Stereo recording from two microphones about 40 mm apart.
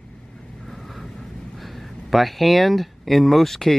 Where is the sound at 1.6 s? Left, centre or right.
Centre.